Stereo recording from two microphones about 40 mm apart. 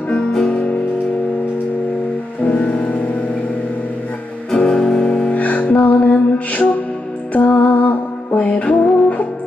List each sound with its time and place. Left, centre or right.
0.3 s music: centre
2.4 s music: left
4.5 s music: centre
5.3 s music: left